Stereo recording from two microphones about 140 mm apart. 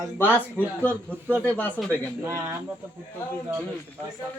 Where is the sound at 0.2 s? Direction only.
15° left (ahead or behind).